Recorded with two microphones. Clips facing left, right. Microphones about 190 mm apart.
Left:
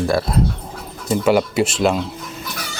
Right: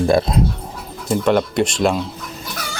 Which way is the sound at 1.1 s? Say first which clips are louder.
Even; 5° left (ahead or behind).